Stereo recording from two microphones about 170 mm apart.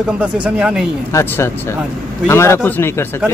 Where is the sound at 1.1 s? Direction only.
15° left (ahead or behind).